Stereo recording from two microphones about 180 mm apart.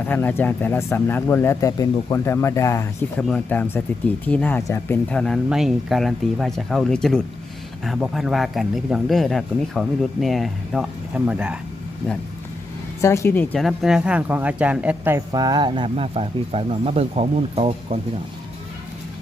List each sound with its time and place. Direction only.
0.0 s speech: 10° left (ahead or behind)
3.2 s speech: 5° left (ahead or behind)
13.0 s speech: 15° left (ahead or behind); by 15.2 s 10° right (ahead or behind)
15.3 s speech: 20° right (ahead or behind)